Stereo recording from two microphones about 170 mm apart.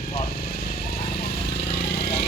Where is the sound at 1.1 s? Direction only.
70° left (ahead or behind).